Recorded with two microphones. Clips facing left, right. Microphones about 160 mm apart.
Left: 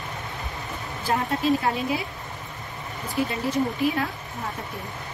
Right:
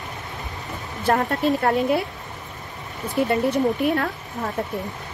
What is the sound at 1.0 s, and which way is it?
Speech, 60° right (ahead or behind).